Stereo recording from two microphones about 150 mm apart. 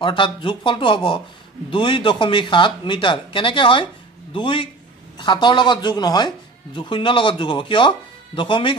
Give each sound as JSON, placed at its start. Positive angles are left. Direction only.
{"t": 0.0, "sound": "speech", "side_deg": 35}